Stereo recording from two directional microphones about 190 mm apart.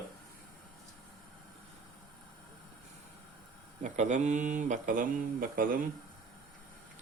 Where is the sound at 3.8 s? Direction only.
40° right (ahead or behind).